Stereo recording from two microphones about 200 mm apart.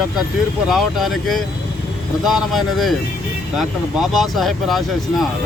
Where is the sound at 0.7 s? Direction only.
Centre (ahead or behind).